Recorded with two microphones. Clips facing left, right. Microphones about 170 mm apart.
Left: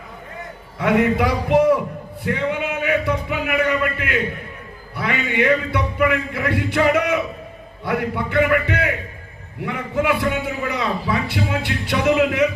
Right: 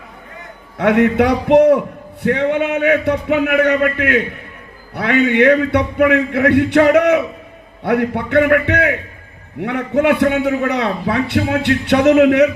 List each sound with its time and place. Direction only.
0.8 s a man's voice: 65° right (ahead or behind)